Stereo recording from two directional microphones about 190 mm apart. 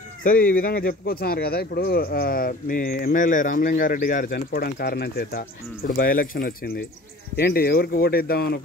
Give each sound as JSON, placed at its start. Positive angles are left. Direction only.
{"t": 0.2, "sound": "speech", "side_deg": 45}